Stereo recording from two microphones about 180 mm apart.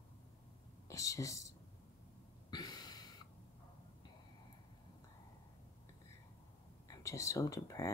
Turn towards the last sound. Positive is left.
turn(degrees=20)  # may be behind; listen again after turning